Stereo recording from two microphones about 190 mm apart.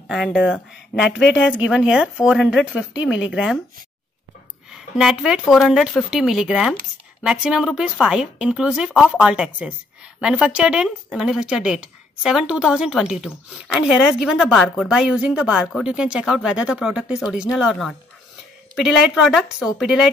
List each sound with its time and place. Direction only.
0.1 s a woman's voice: centre (ahead or behind)
0.9 s speech: 65° left (ahead or behind)
1.4 s a woman's voice: 5° right (ahead or behind)
3.0 s speech: 80° left
3.3 s a woman's voice: 5° right (ahead or behind)
4.6 s a woman's voice: centre (ahead or behind)